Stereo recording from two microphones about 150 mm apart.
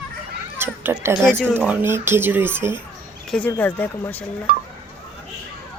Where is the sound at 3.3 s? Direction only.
10° left (ahead or behind).